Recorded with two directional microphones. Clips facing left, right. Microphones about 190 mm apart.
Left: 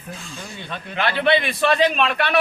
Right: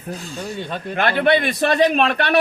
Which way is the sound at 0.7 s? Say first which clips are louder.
Right 3 dB; 50° right (ahead or behind).